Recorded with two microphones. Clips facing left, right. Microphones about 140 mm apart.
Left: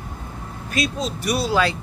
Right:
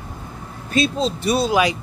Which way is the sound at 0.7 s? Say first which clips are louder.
Right 5 dB; 25° right (ahead or behind).